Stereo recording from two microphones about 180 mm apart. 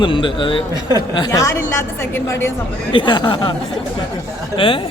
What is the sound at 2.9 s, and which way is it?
Speech, 25° left (ahead or behind).